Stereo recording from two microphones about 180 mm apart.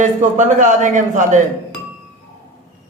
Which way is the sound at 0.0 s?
45° right (ahead or behind).